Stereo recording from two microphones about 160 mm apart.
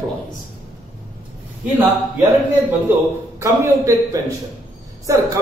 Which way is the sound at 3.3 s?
20° right (ahead or behind).